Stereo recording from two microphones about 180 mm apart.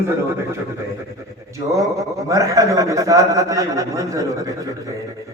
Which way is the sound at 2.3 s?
15° right (ahead or behind).